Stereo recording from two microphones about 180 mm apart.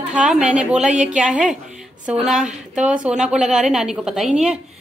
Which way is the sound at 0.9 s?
45° right (ahead or behind).